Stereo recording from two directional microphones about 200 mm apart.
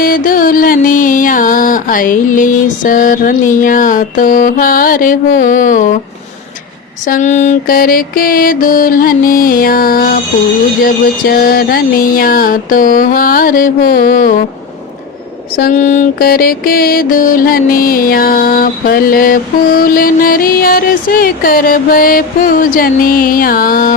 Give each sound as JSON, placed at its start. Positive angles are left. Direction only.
{"t": 0.0, "sound": "music", "side_deg": 45}
{"t": 7.0, "sound": "music", "side_deg": 40}
{"t": 15.5, "sound": "music", "side_deg": 45}